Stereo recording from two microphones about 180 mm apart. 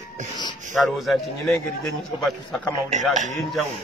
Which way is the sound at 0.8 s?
Centre (ahead or behind).